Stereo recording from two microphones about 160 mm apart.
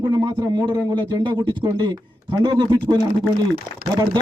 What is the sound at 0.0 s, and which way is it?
Speech, 25° right (ahead or behind).